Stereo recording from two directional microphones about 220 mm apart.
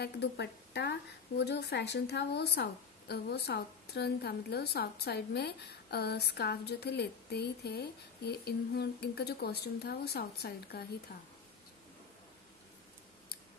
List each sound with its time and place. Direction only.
0.0 s a woman's voice: 50° left (ahead or behind)